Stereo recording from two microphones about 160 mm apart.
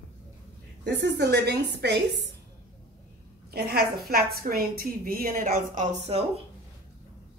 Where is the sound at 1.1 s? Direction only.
90° right.